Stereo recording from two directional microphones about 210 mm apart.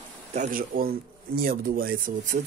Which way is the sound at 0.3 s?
40° right (ahead or behind).